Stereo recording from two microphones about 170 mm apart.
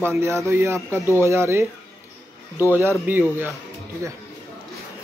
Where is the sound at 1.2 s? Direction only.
15° right (ahead or behind).